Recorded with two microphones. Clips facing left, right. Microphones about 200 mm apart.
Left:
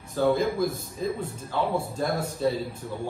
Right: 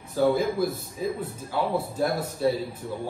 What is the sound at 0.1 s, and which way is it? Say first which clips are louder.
A man's voice: right 1 dB; 10° right (ahead or behind).